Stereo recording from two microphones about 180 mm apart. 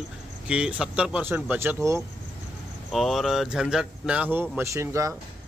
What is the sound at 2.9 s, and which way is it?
Speech, centre (ahead or behind).